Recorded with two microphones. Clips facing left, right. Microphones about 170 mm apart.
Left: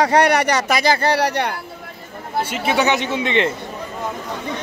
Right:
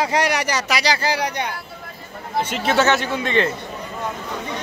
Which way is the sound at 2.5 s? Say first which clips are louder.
Right 1 dB; 10° left (ahead or behind).